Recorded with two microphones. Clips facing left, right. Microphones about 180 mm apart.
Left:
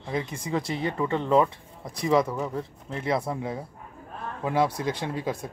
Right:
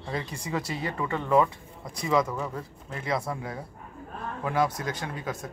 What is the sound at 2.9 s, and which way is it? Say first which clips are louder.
Speech: left 3 dB; 25° left (ahead or behind).